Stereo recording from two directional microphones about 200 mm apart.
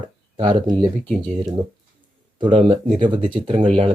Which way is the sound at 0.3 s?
20° right (ahead or behind).